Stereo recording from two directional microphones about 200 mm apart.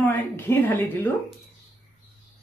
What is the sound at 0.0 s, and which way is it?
A woman's voice, 10° left (ahead or behind).